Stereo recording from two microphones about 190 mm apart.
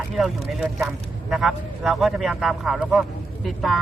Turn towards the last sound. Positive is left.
turn(degrees=0)  # may be behind; listen again after turning